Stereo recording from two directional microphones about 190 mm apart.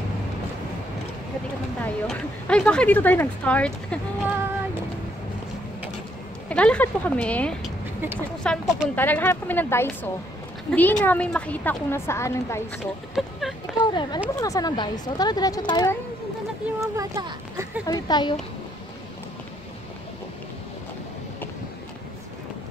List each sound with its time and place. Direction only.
1.8 s a woman's voice: 5° left (ahead or behind)
6.5 s a woman's voice: 5° left (ahead or behind)
13.1 s speech: centre (ahead or behind)
13.8 s speech: 25° left (ahead or behind)
16.6 s a sound: 15° right (ahead or behind)
17.8 s speech: 20° left (ahead or behind)